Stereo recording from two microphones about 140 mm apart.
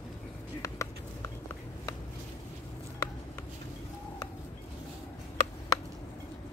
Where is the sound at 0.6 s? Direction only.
20° left (ahead or behind).